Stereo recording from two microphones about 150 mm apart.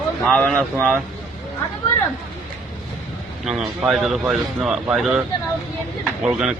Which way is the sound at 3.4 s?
5° right (ahead or behind).